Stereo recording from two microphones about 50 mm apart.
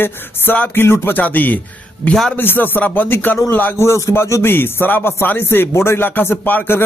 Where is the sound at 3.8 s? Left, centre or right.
Left.